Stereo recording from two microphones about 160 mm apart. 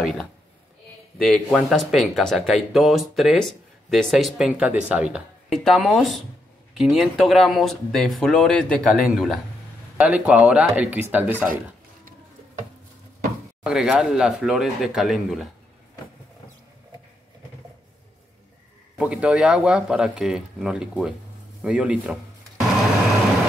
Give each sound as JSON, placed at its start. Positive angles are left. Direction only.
{"t": 0.0, "sound": "speech", "side_deg": 5}
{"t": 13.7, "sound": "speech", "side_deg": -5}
{"t": 18.9, "sound": "speech", "side_deg": -5}